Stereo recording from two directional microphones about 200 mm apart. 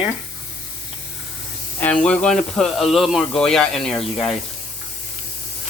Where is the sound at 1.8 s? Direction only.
5° left (ahead or behind).